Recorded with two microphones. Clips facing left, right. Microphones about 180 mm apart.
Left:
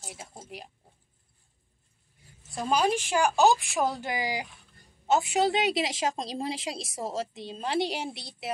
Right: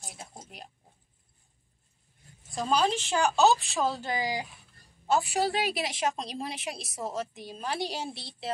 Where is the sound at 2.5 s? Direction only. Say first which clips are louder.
Left 1 dB; 10° left (ahead or behind).